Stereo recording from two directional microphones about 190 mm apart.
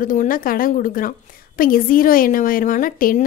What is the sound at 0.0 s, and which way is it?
A woman's voice, 45° left (ahead or behind).